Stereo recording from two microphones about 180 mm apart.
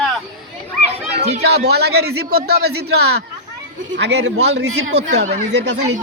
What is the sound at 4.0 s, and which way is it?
A man's voice, 75° right (ahead or behind).